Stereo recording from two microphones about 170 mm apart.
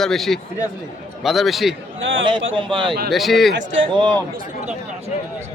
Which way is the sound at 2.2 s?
30° right (ahead or behind).